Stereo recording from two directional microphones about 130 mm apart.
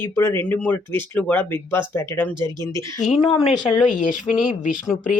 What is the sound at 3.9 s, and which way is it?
Speech, 90° left.